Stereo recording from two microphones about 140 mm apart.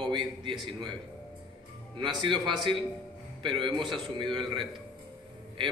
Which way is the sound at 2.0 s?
35° right (ahead or behind).